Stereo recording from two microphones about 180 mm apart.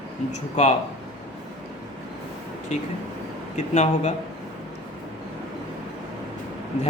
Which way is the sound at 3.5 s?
40° left (ahead or behind).